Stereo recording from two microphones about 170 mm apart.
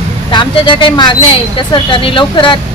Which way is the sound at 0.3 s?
30° left (ahead or behind).